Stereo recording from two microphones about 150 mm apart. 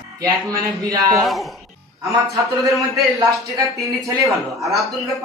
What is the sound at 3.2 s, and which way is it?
Speech, 20° right (ahead or behind).